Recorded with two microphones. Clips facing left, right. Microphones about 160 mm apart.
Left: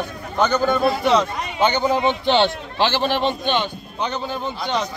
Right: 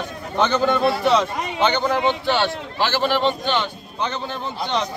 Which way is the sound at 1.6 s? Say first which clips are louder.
Left 1 dB; 10° left (ahead or behind).